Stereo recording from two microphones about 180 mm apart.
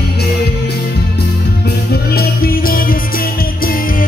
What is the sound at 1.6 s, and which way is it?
Music, 60° left (ahead or behind).